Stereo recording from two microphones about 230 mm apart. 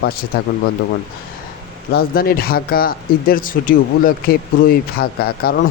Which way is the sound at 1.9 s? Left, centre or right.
Left.